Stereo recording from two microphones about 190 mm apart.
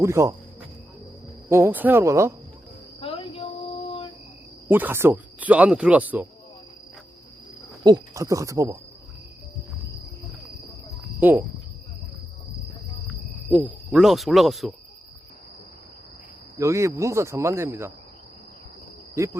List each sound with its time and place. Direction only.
0.0 s speech: 15° right (ahead or behind)
1.5 s speech: 15° right (ahead or behind)
3.0 s a sound: 30° left (ahead or behind)
4.7 s speech: 10° right (ahead or behind)
7.9 s speech: 20° right (ahead or behind)
11.2 s cricket: 10° right (ahead or behind)
13.5 s speech: 5° right (ahead or behind)
16.6 s speech: 15° right (ahead or behind)
19.1 s cricket: 15° right (ahead or behind)